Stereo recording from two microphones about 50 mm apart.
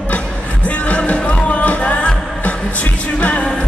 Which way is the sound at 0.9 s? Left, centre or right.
Left.